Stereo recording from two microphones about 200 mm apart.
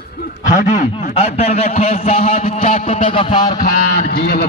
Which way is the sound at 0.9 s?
35° left (ahead or behind).